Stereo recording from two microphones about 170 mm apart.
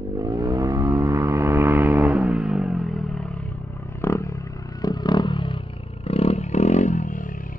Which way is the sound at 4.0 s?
15° left (ahead or behind).